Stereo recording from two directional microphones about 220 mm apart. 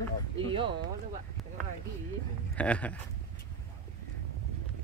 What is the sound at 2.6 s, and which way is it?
Speech, 5° left (ahead or behind).